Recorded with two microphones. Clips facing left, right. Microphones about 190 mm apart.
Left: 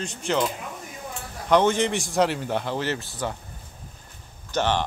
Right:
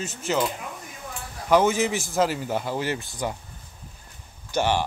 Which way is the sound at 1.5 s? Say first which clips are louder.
Even; 5° right (ahead or behind).